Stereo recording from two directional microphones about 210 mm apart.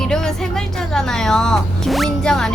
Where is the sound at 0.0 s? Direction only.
5° left (ahead or behind).